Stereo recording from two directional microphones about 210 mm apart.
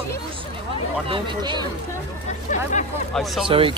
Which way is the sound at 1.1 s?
25° right (ahead or behind).